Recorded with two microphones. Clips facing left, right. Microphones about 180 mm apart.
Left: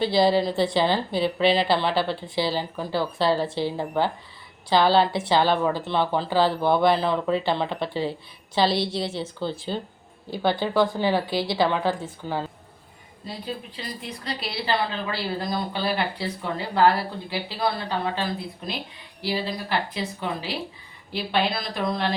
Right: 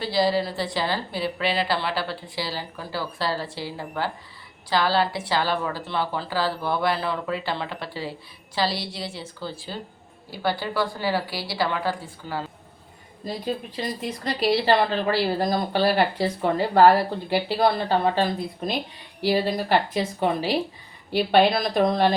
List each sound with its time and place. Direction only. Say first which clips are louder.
0.2 s a woman's voice: left 2 dB; 25° left (ahead or behind)
2.0 s a woman's voice: left 5 dB; 25° left (ahead or behind)
13.2 s speech: right 5 dB; 45° right (ahead or behind)
19.2 s speech: right 6 dB; 45° right (ahead or behind)